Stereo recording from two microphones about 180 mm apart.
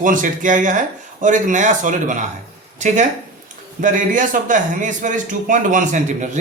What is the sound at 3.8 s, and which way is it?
A man's voice, 45° right (ahead or behind).